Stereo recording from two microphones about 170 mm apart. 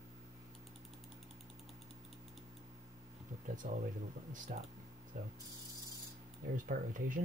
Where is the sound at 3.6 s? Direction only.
55° right (ahead or behind).